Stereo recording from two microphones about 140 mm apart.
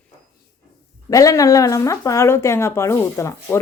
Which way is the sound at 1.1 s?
25° left (ahead or behind).